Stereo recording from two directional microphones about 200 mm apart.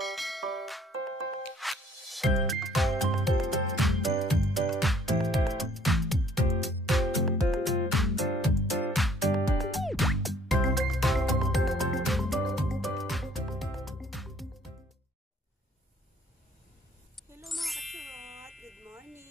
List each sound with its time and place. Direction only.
0.0 s music: centre (ahead or behind)
17.4 s music: centre (ahead or behind)